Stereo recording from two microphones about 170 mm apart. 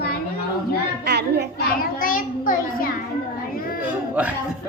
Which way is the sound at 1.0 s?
75° right (ahead or behind).